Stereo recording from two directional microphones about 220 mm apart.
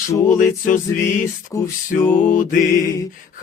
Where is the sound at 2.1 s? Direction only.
35° left (ahead or behind).